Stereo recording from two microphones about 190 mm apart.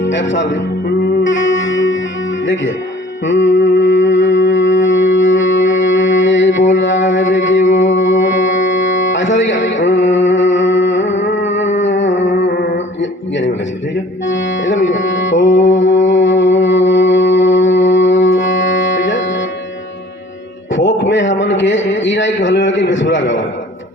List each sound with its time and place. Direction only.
0.0 s music: 70° left (ahead or behind)
3.2 s music: 75° left (ahead or behind)
11.8 s a sound: 75° left (ahead or behind)
12.5 s mantra: 75° left (ahead or behind)
14.3 s music: 75° left (ahead or behind)
20.7 s a sound: 70° left (ahead or behind)